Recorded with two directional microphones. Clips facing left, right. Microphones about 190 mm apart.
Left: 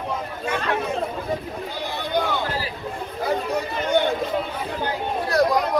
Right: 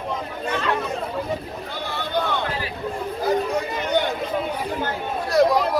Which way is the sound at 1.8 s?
15° left (ahead or behind).